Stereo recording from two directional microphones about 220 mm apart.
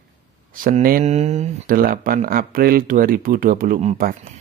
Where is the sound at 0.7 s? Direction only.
40° right (ahead or behind).